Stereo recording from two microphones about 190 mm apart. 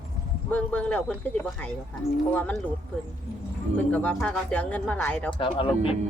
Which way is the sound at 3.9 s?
5° left (ahead or behind).